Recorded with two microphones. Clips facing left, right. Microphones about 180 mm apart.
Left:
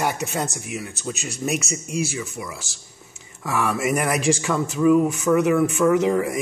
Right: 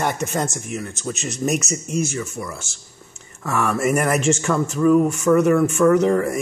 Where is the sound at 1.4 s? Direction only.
40° right (ahead or behind).